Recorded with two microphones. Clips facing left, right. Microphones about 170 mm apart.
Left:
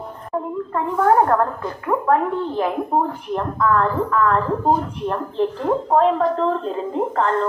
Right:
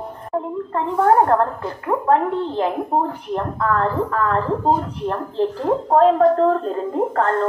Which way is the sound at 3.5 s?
35° right (ahead or behind).